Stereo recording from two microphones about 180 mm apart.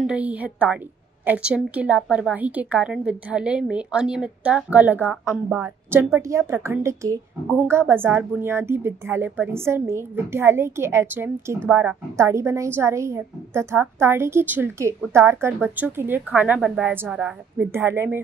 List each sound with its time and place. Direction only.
0.0 s a woman's voice: 5° right (ahead or behind)